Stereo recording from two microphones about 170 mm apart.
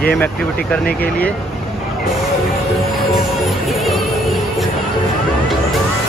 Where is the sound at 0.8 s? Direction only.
65° left (ahead or behind).